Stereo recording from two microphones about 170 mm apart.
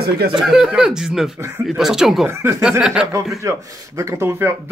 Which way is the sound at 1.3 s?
15° right (ahead or behind).